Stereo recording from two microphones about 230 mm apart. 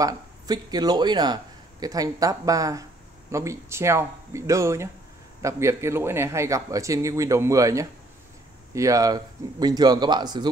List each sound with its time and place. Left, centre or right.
0.0 s a man's voice: centre